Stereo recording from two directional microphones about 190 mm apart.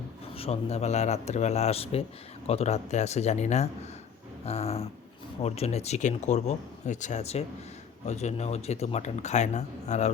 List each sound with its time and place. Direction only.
0.3 s speech: 30° left (ahead or behind)